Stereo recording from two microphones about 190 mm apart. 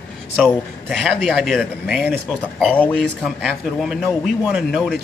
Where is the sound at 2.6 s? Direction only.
5° left (ahead or behind).